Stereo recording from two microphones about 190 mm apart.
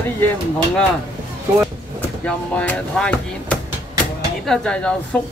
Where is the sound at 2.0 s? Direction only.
10° left (ahead or behind).